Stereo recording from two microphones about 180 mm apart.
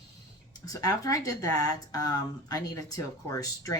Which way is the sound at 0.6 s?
20° left (ahead or behind).